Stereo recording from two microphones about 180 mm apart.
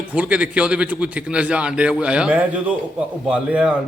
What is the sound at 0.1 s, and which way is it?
A man's voice, 5° right (ahead or behind).